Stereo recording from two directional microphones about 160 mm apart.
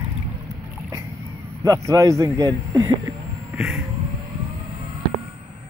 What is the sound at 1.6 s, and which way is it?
Speech, 20° right (ahead or behind).